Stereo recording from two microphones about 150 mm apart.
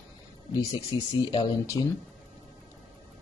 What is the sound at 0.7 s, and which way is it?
Speech, 30° left (ahead or behind).